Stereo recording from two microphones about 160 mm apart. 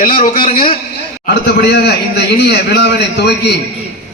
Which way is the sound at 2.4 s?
90° left.